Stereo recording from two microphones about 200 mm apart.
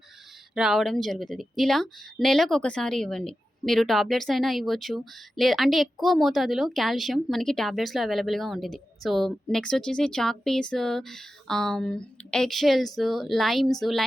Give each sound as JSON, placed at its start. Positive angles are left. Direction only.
{"t": 0.5, "sound": "speech", "side_deg": 0}